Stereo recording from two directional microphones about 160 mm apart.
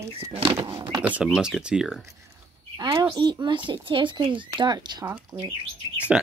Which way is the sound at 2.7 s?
25° right (ahead or behind).